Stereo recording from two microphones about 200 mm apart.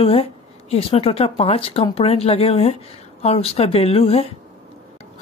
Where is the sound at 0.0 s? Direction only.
30° left (ahead or behind).